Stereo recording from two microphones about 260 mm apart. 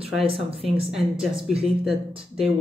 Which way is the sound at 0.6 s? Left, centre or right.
Centre.